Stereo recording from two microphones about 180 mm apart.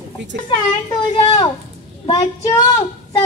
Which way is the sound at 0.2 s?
90° right.